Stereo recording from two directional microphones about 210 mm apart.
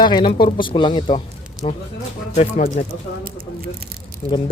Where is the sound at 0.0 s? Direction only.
25° left (ahead or behind).